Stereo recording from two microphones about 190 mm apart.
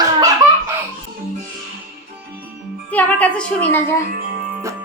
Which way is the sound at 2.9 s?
5° left (ahead or behind).